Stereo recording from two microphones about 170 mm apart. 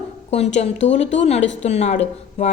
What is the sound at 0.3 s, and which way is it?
Speech, 40° left (ahead or behind).